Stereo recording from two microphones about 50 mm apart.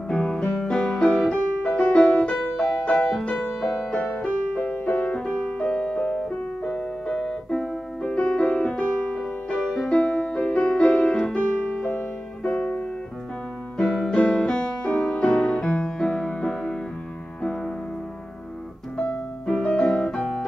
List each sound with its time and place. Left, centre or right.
0.1 s piano: centre
3.2 s music: centre
4.0 s music: left
6.7 s piano: centre
8.0 s music: left
13.7 s keyboard: centre
14.1 s piano: left
15.0 s music: centre
18.9 s piano: left